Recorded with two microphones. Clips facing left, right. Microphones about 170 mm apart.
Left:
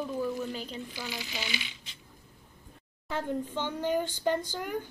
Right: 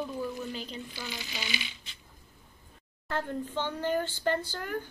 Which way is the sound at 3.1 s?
10° left (ahead or behind).